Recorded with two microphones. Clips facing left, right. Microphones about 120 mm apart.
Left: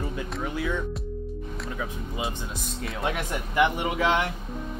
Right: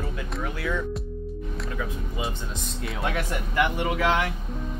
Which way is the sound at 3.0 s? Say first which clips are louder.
Even; 15° left (ahead or behind).